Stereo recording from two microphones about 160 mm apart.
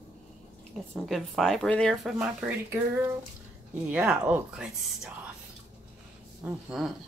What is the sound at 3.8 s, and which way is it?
Speech, 10° right (ahead or behind).